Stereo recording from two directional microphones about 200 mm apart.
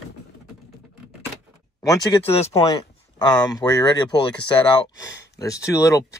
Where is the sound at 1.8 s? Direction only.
30° left (ahead or behind).